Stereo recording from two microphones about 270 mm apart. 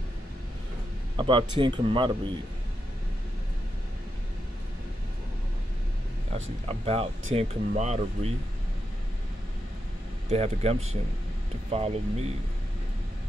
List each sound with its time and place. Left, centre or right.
1.1 s a man's voice: centre
6.3 s speech: right
10.3 s speech: right